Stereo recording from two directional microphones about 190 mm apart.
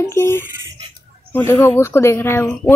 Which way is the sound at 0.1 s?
15° left (ahead or behind).